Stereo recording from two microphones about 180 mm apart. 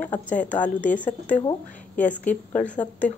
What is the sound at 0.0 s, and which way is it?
Speech, 10° left (ahead or behind).